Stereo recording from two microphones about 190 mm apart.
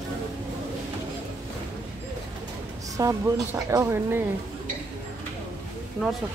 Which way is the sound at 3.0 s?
15° right (ahead or behind).